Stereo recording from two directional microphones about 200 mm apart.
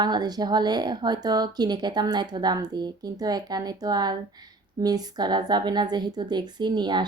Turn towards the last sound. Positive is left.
turn(degrees=-20)  # may be behind; listen again after turning